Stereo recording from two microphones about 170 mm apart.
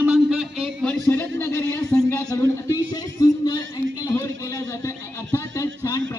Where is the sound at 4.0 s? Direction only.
20° left (ahead or behind).